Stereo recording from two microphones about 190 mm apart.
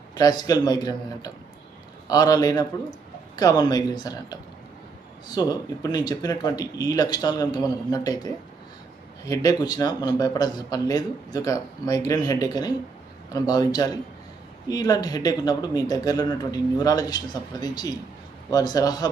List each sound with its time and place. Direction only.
0.1 s a man's voice: 20° left (ahead or behind)